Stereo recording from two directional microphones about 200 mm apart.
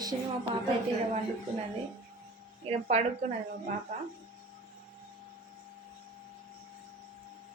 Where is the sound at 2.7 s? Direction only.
35° right (ahead or behind).